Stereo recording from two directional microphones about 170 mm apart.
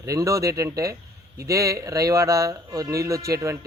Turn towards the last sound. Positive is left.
turn(degrees=-20)  # may be behind; listen again after turning